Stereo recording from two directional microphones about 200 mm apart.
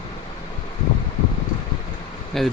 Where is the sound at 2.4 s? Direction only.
Centre (ahead or behind).